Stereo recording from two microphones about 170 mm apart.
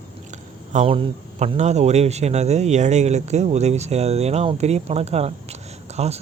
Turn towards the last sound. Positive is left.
turn(degrees=-40)  # may be behind; listen again after turning